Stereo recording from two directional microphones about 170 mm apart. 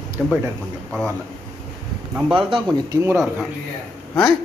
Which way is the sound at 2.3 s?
25° right (ahead or behind).